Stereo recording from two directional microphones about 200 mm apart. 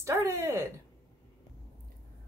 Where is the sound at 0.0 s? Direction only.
15° right (ahead or behind).